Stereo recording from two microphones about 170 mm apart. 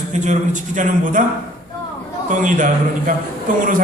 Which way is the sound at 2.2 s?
50° right (ahead or behind).